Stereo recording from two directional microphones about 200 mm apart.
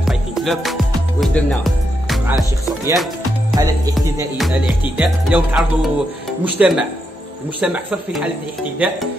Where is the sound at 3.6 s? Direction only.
15° right (ahead or behind).